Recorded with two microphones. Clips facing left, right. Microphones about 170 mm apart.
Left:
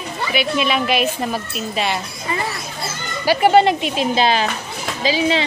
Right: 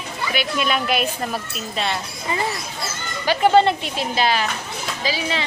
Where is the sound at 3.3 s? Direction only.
10° left (ahead or behind).